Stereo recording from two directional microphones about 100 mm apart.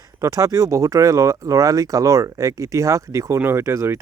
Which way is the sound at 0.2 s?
35° right (ahead or behind).